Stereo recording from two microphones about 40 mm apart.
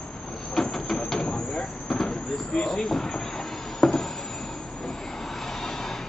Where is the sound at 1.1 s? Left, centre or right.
Left.